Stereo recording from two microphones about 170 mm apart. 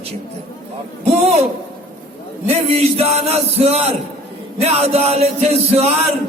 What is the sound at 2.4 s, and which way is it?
A man's voice, 35° right (ahead or behind).